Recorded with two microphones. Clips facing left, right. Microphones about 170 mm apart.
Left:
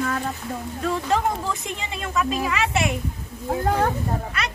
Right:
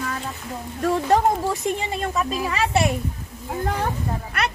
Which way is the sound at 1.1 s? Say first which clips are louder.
Right 5 dB; 45° right (ahead or behind).